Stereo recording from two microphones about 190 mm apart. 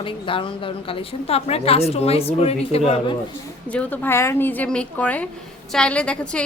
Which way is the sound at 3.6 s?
10° left (ahead or behind).